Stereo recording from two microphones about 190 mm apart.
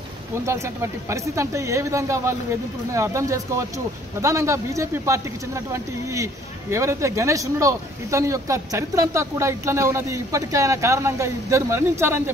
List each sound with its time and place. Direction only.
1.1 s speech: 15° right (ahead or behind)
6.7 s speech: 15° right (ahead or behind)